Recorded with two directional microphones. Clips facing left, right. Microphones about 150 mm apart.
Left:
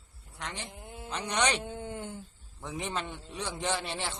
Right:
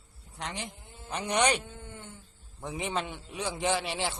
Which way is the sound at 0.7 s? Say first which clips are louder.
Left 5 dB; 60° left (ahead or behind).